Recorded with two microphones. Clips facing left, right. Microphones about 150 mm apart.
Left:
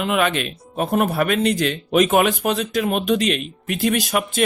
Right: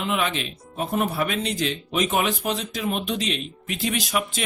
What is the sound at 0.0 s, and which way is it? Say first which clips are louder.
Speech: left 5 dB; 60° left (ahead or behind).